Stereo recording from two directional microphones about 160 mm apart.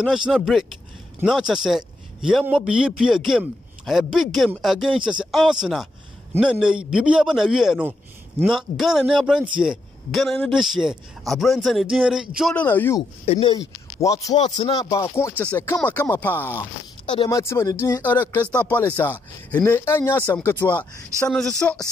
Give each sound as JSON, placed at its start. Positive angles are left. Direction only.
{"t": 0.0, "sound": "speech", "side_deg": -5}
{"t": 12.5, "sound": "speech", "side_deg": 10}
{"t": 13.2, "sound": "speech", "side_deg": 35}
{"t": 13.6, "sound": "speech", "side_deg": 20}
{"t": 14.9, "sound": "speech", "side_deg": 15}